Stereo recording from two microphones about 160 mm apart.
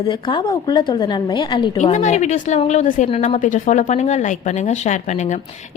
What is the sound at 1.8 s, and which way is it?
Speech, 50° left (ahead or behind).